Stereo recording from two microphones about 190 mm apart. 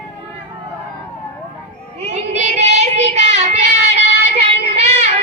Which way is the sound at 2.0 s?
35° right (ahead or behind).